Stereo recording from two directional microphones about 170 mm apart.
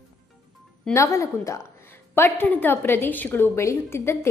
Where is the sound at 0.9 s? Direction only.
15° left (ahead or behind).